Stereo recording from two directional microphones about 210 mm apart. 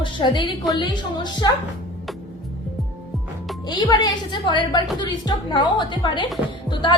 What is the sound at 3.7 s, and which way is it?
A woman's voice, 20° left (ahead or behind).